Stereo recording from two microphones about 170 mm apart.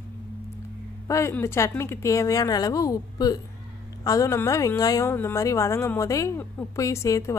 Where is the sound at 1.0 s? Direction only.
15° left (ahead or behind).